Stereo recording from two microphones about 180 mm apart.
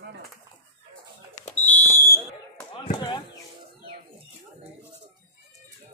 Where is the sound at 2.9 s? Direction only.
25° left (ahead or behind).